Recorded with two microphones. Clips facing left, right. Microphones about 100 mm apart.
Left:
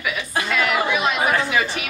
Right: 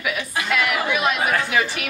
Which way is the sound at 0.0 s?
5° right (ahead or behind).